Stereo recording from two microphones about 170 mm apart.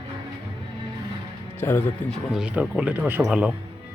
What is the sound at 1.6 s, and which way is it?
Speech, 15° left (ahead or behind).